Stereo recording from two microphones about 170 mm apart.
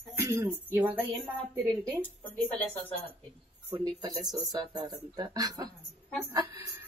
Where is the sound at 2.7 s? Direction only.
10° left (ahead or behind).